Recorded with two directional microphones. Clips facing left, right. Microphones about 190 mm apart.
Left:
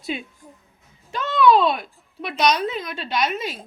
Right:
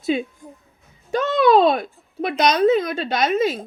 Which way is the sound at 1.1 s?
45° right (ahead or behind).